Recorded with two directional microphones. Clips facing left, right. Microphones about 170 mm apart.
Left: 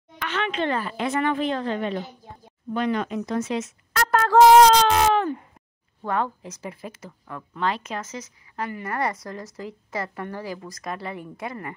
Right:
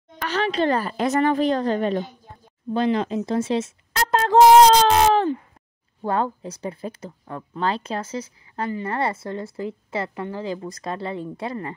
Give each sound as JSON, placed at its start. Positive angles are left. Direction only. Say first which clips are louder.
{"t": 0.2, "sound": "a woman's voice", "louder": "right 4 dB", "side_deg": -35}
{"t": 4.8, "sound": "baby cry", "louder": "right 3 dB", "side_deg": -35}
{"t": 6.0, "sound": "speech", "louder": "right 3 dB", "side_deg": -30}